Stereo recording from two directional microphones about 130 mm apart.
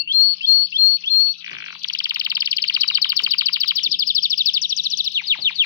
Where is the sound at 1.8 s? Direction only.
30° right (ahead or behind).